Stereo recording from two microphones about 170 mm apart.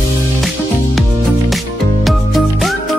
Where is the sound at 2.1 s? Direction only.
Centre (ahead or behind).